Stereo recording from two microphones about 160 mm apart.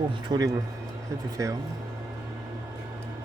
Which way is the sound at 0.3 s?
25° right (ahead or behind).